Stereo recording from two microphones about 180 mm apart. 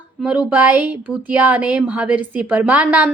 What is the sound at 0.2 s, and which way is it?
A woman's voice, 5° right (ahead or behind).